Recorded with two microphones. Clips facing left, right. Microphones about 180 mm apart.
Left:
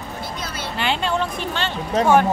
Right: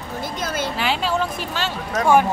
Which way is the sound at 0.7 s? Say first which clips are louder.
Left 3 dB; 5° right (ahead or behind).